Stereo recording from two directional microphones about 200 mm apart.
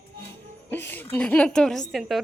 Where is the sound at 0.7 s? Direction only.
10° left (ahead or behind).